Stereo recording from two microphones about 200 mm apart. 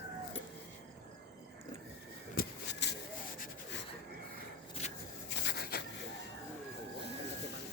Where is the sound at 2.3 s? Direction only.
55° left (ahead or behind).